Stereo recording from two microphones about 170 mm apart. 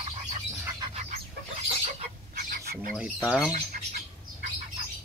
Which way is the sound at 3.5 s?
40° right (ahead or behind).